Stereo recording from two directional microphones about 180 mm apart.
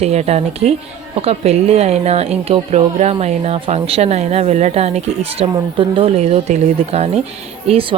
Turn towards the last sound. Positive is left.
turn(degrees=-30)  # may be behind; listen again after turning